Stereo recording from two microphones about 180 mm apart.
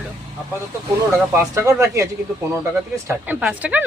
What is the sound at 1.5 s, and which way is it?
Speech, 15° right (ahead or behind).